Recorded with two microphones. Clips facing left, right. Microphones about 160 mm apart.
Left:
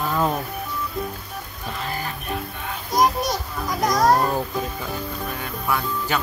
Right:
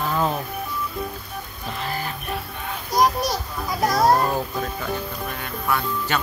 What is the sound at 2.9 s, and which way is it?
Children playing, centre (ahead or behind).